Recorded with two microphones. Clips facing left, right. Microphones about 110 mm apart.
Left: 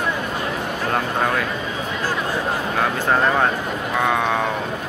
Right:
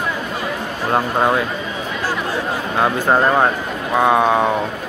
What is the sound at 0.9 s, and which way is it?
Speech, 25° right (ahead or behind).